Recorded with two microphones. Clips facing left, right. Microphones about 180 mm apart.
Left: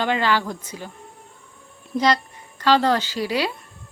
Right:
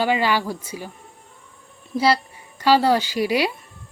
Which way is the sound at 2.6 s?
10° right (ahead or behind).